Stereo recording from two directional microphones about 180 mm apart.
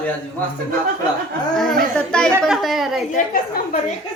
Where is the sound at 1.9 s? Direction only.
5° left (ahead or behind).